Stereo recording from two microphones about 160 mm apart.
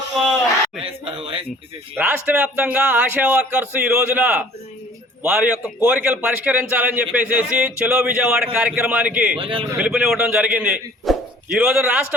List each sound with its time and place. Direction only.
0.1 s a sound: centre (ahead or behind)
2.0 s a man's voice: 10° right (ahead or behind)
9.4 s speech: 35° right (ahead or behind)
9.7 s speech: 5° right (ahead or behind)